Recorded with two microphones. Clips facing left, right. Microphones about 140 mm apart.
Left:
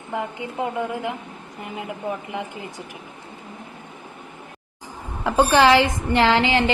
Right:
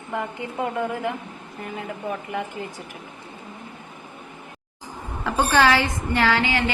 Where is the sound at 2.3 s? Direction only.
20° left (ahead or behind).